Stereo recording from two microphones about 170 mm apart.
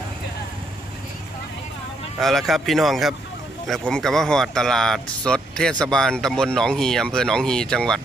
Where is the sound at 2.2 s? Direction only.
Centre (ahead or behind).